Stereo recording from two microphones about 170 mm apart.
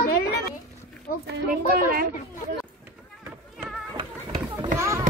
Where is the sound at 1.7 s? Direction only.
60° right (ahead or behind).